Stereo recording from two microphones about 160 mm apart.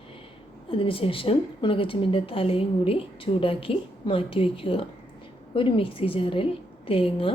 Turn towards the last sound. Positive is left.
turn(degrees=35)  # may be behind; listen again after turning